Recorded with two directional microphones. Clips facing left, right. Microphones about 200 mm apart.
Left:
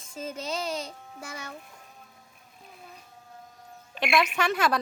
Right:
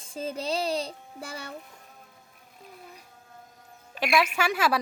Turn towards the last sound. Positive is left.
turn(degrees=-5)  # may be behind; listen again after turning